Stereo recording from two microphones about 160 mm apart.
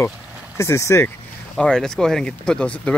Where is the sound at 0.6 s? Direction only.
20° left (ahead or behind).